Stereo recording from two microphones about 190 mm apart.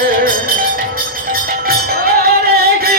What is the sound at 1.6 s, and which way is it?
Music, 50° right (ahead or behind).